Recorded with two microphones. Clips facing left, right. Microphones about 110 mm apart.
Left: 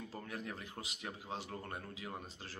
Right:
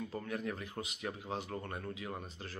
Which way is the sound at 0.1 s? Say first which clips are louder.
Right 6 dB; 35° left (ahead or behind).